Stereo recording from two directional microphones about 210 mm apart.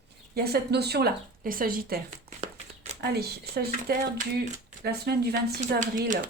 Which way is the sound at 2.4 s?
30° right (ahead or behind).